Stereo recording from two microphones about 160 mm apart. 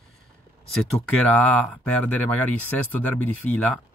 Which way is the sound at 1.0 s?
10° left (ahead or behind).